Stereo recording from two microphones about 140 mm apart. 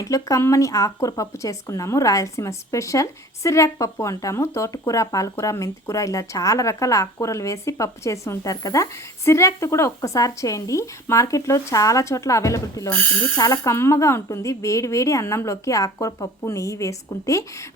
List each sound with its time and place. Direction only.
0.0 s speech: 25° left (ahead or behind)